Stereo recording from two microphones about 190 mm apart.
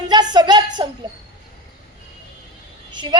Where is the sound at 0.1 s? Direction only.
20° right (ahead or behind).